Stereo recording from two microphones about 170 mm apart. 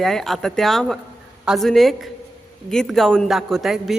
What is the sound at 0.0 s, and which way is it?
A man's voice, centre (ahead or behind).